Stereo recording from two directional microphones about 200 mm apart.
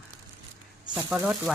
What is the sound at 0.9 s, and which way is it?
Speech, 5° right (ahead or behind).